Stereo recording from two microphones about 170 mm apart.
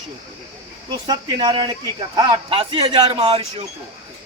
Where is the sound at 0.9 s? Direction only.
25° right (ahead or behind).